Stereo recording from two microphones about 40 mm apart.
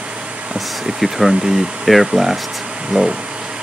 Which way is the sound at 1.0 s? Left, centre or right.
Centre.